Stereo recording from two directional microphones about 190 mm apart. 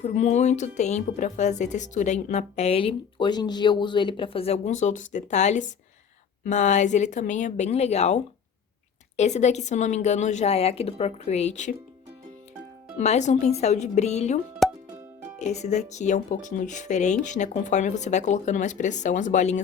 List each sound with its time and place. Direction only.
0.0 s a woman's voice: 35° left (ahead or behind)
13.0 s a woman's voice: 40° left (ahead or behind)
14.6 s music: centre (ahead or behind)
15.4 s a woman's voice: 35° left (ahead or behind)